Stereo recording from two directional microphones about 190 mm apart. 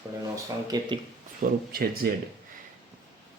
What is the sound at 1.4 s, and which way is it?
Speech, 50° right (ahead or behind).